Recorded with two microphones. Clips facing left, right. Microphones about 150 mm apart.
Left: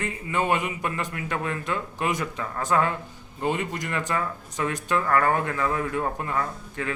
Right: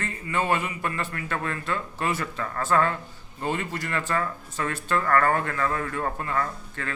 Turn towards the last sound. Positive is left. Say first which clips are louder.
# left 2 dB
turn(degrees=15)  # may be behind; listen again after turning